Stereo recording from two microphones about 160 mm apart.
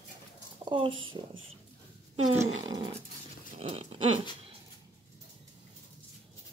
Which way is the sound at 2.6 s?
25° right (ahead or behind).